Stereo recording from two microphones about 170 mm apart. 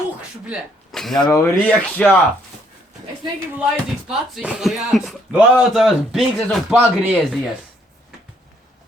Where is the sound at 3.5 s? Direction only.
5° right (ahead or behind).